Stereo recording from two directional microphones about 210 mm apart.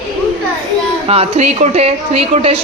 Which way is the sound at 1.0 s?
30° right (ahead or behind).